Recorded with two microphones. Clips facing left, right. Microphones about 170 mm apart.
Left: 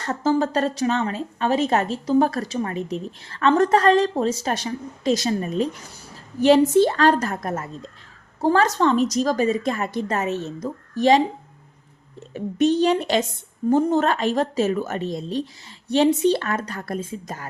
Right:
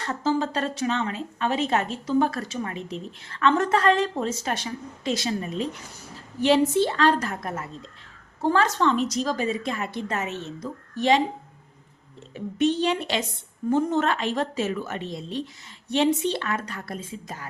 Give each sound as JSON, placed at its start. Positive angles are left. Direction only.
{"t": 0.0, "sound": "a woman's voice", "side_deg": 45}
{"t": 12.3, "sound": "a woman's voice", "side_deg": 40}